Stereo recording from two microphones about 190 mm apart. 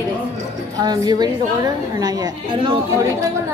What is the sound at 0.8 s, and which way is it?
A woman's voice, 20° right (ahead or behind).